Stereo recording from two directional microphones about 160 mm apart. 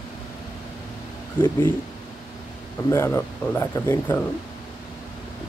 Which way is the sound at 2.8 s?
20° left (ahead or behind).